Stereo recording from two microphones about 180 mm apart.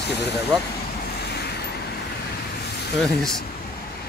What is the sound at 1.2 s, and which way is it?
Waves, 65° left (ahead or behind).